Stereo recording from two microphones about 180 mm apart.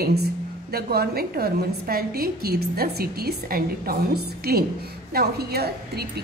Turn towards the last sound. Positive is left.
turn(degrees=-60)  # may be behind; listen again after turning